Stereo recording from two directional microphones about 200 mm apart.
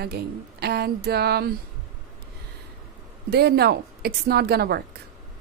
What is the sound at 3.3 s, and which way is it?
Speech, 55° right (ahead or behind).